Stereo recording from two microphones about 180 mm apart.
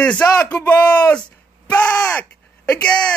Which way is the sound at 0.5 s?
20° left (ahead or behind).